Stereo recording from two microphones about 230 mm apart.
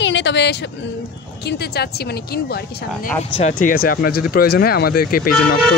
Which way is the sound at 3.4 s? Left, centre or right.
Left.